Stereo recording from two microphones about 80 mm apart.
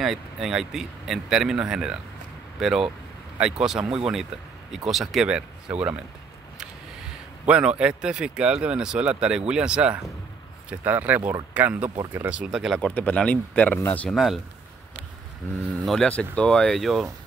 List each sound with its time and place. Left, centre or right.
0.0 s speech: centre
5.3 s speech: centre
7.4 s speech: centre
12.4 s speech: centre
12.8 s speech: centre
14.1 s speech: centre
15.8 s speech: centre